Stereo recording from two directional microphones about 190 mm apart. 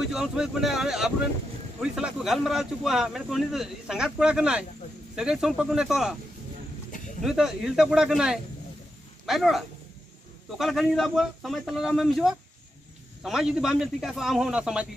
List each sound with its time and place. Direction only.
0.1 s speech: centre (ahead or behind)
7.2 s speech: 5° right (ahead or behind)